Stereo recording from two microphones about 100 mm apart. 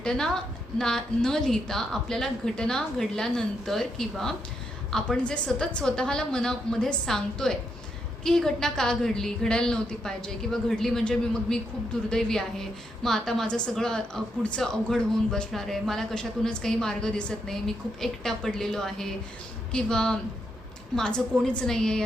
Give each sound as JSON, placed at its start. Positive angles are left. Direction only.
{"t": 0.0, "sound": "a woman's voice", "side_deg": 5}